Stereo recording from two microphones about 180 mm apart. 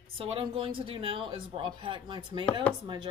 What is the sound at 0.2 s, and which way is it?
Speech, 30° right (ahead or behind).